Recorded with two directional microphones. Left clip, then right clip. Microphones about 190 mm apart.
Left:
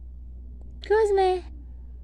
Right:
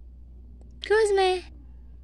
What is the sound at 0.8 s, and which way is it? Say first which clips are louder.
Speech: even; centre (ahead or behind).